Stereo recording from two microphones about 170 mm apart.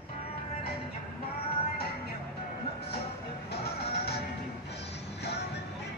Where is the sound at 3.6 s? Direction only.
70° left (ahead or behind).